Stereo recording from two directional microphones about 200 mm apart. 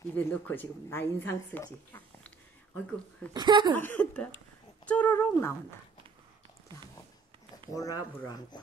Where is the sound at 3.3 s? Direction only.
20° right (ahead or behind).